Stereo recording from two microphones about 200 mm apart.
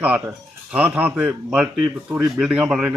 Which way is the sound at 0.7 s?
10° right (ahead or behind).